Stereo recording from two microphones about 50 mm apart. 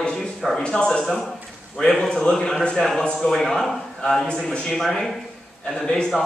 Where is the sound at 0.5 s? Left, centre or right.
Centre.